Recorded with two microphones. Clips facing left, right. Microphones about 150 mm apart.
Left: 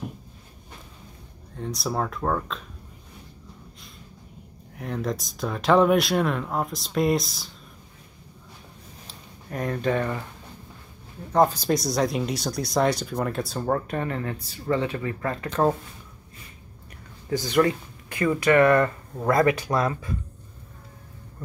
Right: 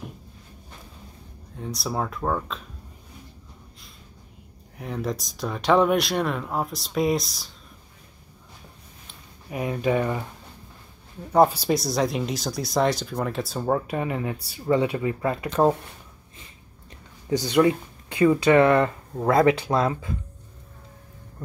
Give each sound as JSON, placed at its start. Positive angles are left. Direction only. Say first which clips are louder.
{"t": 1.6, "sound": "speech", "louder": "left 1 dB", "side_deg": 0}
{"t": 4.7, "sound": "speech", "louder": "even", "side_deg": 0}
{"t": 9.5, "sound": "speech", "louder": "right 1 dB", "side_deg": -10}
{"t": 11.3, "sound": "speech", "louder": "right 2 dB", "side_deg": -10}
{"t": 17.3, "sound": "speech", "louder": "right 2 dB", "side_deg": -15}